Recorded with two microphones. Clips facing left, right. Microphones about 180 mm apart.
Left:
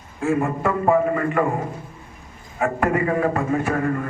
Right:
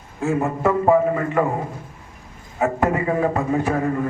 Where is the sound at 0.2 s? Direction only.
20° right (ahead or behind).